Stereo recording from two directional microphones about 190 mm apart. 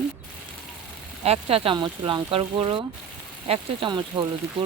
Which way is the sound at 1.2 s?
30° right (ahead or behind).